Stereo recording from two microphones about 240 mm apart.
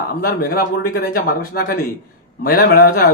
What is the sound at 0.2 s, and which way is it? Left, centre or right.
A man's voice, left.